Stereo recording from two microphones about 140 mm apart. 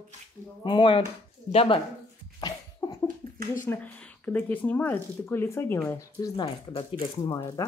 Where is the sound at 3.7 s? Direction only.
10° left (ahead or behind); by 6.8 s 25° left (ahead or behind).